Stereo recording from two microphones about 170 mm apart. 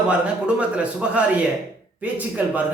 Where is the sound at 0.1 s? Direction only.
5° right (ahead or behind).